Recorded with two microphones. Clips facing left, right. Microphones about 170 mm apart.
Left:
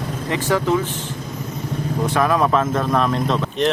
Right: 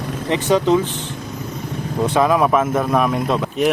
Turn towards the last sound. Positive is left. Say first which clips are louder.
# right 1 dB
turn(degrees=-10)  # may be behind; listen again after turning